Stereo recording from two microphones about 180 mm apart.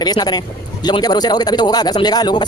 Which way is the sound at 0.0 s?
20° left (ahead or behind).